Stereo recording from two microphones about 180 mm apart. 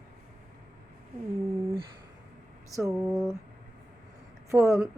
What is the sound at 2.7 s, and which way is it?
Speech, 15° right (ahead or behind).